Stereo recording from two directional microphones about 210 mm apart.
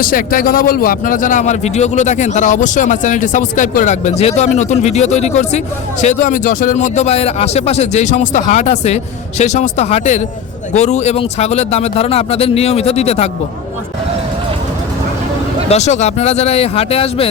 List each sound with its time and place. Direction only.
0.0 s a man's voice: 40° left (ahead or behind)
15.7 s a man's voice: 35° left (ahead or behind)